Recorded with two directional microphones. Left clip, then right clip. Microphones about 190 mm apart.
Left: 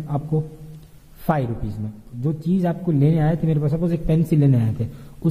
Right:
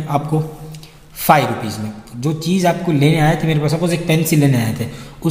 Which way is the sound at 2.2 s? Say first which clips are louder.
Right 7 dB; 45° left (ahead or behind).